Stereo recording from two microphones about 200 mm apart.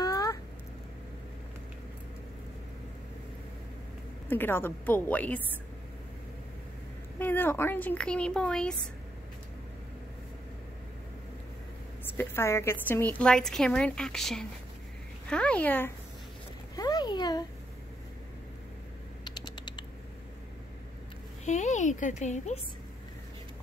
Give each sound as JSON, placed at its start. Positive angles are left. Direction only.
{"t": 0.0, "sound": "a sound", "side_deg": 15}
{"t": 4.3, "sound": "speech", "side_deg": 10}
{"t": 7.2, "sound": "speech", "side_deg": 10}
{"t": 12.1, "sound": "a woman's voice", "side_deg": 10}
{"t": 16.7, "sound": "a sound", "side_deg": 20}
{"t": 19.2, "sound": "typing", "side_deg": 20}
{"t": 21.5, "sound": "a woman's voice", "side_deg": 35}